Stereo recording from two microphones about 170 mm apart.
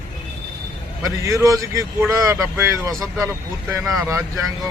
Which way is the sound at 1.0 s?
20° right (ahead or behind).